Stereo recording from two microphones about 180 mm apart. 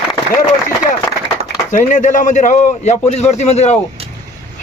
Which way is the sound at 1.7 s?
45° left (ahead or behind).